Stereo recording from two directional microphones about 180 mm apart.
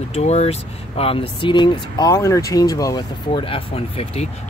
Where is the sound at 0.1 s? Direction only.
35° left (ahead or behind).